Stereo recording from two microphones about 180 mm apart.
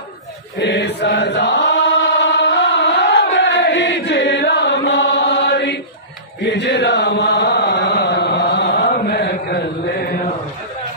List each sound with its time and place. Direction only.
0.6 s chant: 75° left (ahead or behind)
8.8 s chant: 60° left (ahead or behind)